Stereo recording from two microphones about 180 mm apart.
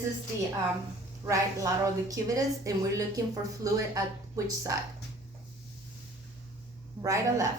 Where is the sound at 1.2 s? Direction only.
20° right (ahead or behind).